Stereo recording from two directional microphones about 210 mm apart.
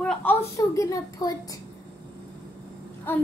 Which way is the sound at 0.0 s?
5° left (ahead or behind).